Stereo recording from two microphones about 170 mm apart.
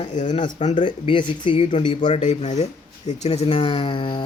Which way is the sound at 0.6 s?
45° left (ahead or behind).